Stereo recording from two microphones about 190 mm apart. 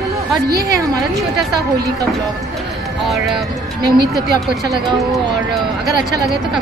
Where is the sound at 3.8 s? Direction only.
20° right (ahead or behind).